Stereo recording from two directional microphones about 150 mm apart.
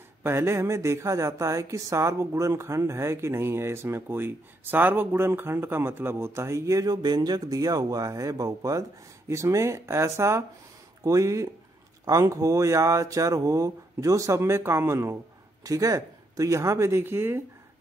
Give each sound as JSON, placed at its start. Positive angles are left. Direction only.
{"t": 0.2, "sound": "speech", "side_deg": -15}